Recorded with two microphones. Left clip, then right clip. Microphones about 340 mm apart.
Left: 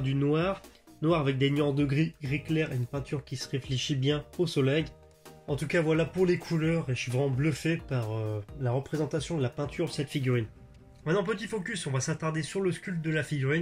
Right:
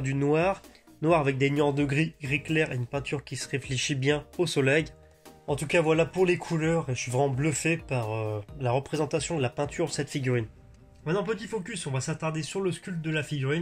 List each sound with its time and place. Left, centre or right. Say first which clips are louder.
0.0 s speech: right 3 dB; centre
11.1 s speech: even; centre